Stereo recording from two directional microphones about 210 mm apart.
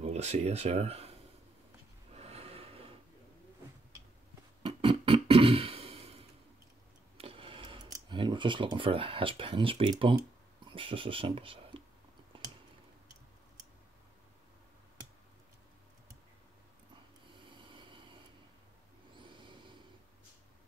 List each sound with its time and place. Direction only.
0.0 s speech: 30° right (ahead or behind)
2.1 s snort: 30° right (ahead or behind)
4.6 s music: 25° right (ahead or behind)
7.2 s a sound: 25° right (ahead or behind)
17.4 s snort: 25° right (ahead or behind)
19.1 s snort: 25° right (ahead or behind)